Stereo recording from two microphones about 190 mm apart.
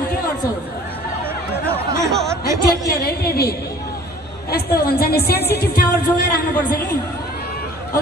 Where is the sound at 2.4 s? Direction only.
15° right (ahead or behind).